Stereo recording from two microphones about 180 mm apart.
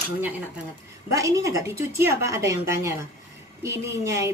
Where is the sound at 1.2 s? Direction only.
15° right (ahead or behind).